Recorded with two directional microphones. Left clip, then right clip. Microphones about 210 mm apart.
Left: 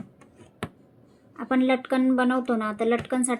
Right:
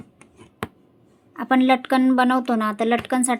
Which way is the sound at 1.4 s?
55° right (ahead or behind).